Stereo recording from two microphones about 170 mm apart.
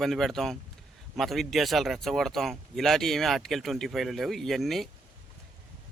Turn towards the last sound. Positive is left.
turn(degrees=0)  # may be behind; listen again after turning